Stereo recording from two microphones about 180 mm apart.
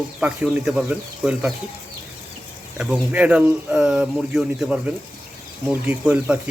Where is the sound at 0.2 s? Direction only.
10° right (ahead or behind).